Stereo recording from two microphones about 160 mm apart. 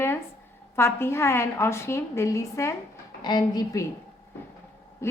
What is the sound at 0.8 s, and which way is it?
A woman's voice, 15° left (ahead or behind).